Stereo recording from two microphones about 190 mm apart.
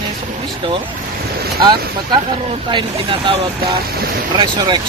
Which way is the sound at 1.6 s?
25° right (ahead or behind).